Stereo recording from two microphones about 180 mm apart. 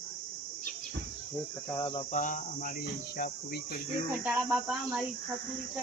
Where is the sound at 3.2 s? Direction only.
55° left (ahead or behind).